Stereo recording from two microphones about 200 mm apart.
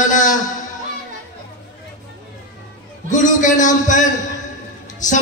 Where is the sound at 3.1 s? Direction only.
40° left (ahead or behind).